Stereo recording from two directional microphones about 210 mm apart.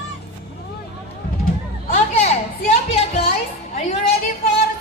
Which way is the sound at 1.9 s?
35° left (ahead or behind).